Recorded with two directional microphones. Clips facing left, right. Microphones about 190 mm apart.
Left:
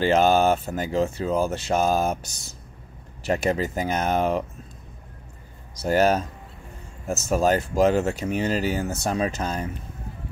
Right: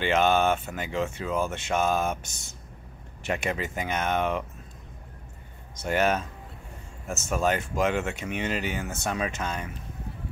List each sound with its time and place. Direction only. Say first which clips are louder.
0.0 s speech: left 4 dB; 35° left (ahead or behind)
5.8 s speech: left 5 dB; 35° left (ahead or behind)